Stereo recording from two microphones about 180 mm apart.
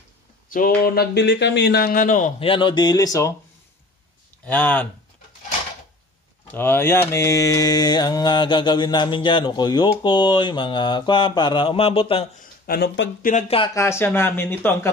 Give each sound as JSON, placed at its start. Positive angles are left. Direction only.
{"t": 0.8, "sound": "speech", "side_deg": 65}
{"t": 2.3, "sound": "mantra", "side_deg": 30}
{"t": 4.5, "sound": "speech", "side_deg": 10}
{"t": 6.4, "sound": "mantra", "side_deg": 10}
{"t": 12.6, "sound": "speech", "side_deg": 65}
{"t": 13.2, "sound": "speech", "side_deg": 40}
{"t": 13.7, "sound": "speech", "side_deg": 15}